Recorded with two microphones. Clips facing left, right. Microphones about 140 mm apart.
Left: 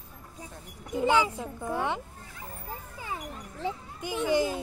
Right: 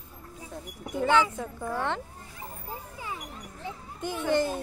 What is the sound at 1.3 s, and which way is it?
Speech, 15° left (ahead or behind).